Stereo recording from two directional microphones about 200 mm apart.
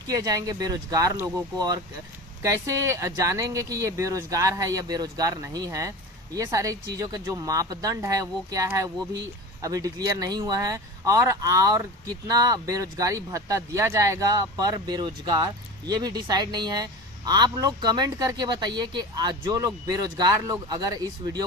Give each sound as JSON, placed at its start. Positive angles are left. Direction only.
{"t": 0.0, "sound": "speech", "side_deg": -15}